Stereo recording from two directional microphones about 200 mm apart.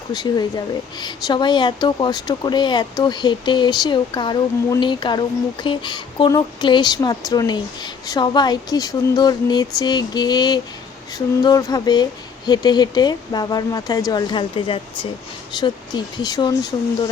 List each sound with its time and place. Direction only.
0.1 s a woman's voice: 20° left (ahead or behind)